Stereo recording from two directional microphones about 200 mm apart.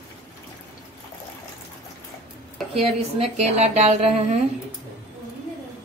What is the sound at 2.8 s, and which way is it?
Speech, 30° right (ahead or behind).